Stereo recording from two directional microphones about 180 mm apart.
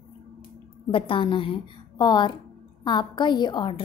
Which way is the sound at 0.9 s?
30° left (ahead or behind).